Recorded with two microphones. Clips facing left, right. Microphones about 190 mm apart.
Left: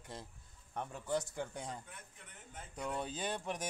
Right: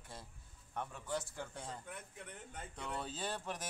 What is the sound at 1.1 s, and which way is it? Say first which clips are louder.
Speech: left 6 dB; 15° left (ahead or behind).